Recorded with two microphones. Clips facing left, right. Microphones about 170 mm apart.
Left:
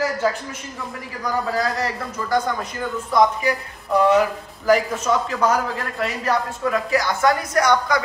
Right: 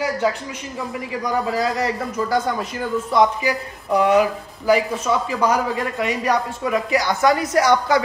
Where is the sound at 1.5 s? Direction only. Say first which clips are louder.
Right 2 dB; 20° right (ahead or behind).